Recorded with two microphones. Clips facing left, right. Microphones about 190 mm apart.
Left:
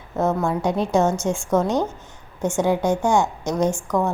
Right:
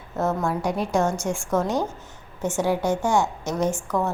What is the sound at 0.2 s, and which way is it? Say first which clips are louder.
A woman's voice: left 3 dB; 15° left (ahead or behind).